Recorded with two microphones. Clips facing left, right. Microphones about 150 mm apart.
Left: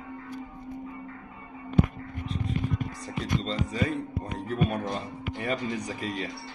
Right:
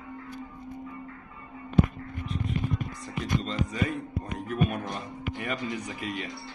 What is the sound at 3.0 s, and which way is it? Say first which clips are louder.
Music: even; 30° left (ahead or behind).